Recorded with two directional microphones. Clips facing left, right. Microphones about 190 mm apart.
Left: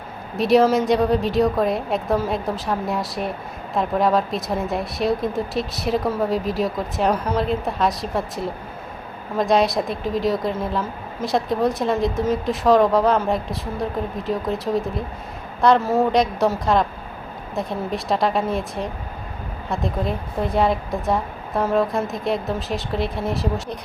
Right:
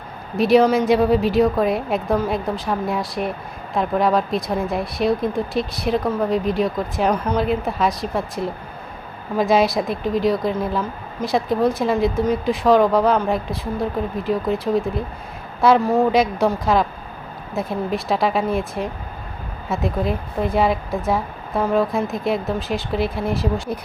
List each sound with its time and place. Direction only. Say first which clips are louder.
0.3 s speech: right 1 dB; centre (ahead or behind)